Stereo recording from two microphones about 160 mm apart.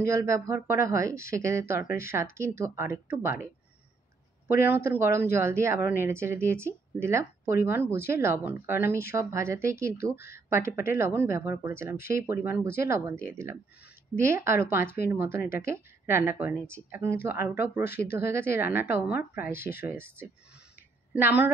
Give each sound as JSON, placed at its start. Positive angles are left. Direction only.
{"t": 0.1, "sound": "a woman's voice", "side_deg": -15}
{"t": 4.6, "sound": "a woman's voice", "side_deg": -10}
{"t": 17.9, "sound": "speech", "side_deg": 80}
{"t": 18.3, "sound": "a woman's voice", "side_deg": -15}